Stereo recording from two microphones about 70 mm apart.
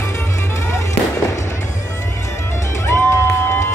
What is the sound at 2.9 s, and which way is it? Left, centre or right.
Music, left.